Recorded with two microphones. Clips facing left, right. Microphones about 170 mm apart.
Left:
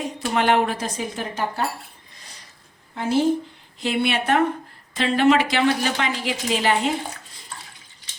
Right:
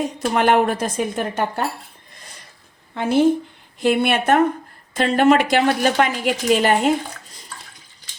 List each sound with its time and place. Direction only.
0.3 s a woman's voice: 50° right (ahead or behind)
2.9 s a woman's voice: 60° right (ahead or behind)
3.8 s a woman's voice: 50° right (ahead or behind)